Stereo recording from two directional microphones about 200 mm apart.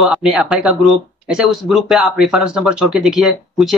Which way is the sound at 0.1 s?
Centre (ahead or behind).